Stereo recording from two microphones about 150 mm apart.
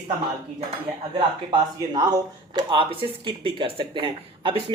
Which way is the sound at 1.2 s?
30° right (ahead or behind).